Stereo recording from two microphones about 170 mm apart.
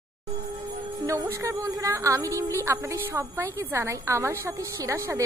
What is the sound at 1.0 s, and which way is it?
A woman's voice, 20° right (ahead or behind).